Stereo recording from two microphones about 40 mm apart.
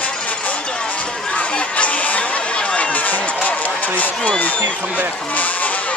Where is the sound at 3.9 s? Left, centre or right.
Left.